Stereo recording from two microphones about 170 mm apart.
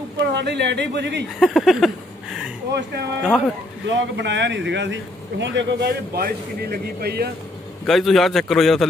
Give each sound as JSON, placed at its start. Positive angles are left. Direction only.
{"t": 0.3, "sound": "speech", "side_deg": -90}
{"t": 1.4, "sound": "a man's voice", "side_deg": 0}
{"t": 3.3, "sound": "a man's voice", "side_deg": -5}
{"t": 3.8, "sound": "speech", "side_deg": -90}
{"t": 7.8, "sound": "a man's voice", "side_deg": 0}